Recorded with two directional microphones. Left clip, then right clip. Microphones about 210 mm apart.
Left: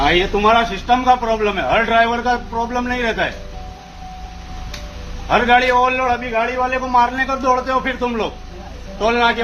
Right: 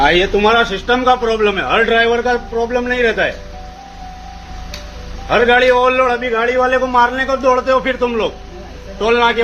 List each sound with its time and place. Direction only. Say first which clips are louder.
0.0 s a man's voice: right 3 dB; centre (ahead or behind)
5.3 s a man's voice: right 3 dB; 10° left (ahead or behind)